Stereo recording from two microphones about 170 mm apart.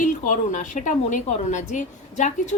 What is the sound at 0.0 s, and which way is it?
A woman's voice, 50° left (ahead or behind).